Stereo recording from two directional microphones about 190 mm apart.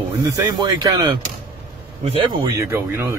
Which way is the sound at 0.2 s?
20° right (ahead or behind).